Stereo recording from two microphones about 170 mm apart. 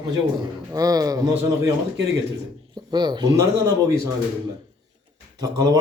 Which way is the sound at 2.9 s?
25° right (ahead or behind).